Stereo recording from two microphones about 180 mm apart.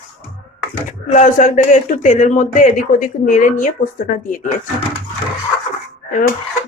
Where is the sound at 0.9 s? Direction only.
45° left (ahead or behind).